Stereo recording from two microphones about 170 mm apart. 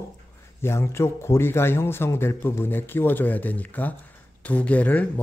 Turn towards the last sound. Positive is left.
turn(degrees=10)  # may be behind; listen again after turning